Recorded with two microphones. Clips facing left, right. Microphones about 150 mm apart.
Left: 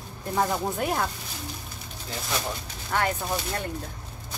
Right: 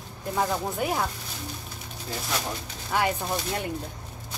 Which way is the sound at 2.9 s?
10° right (ahead or behind).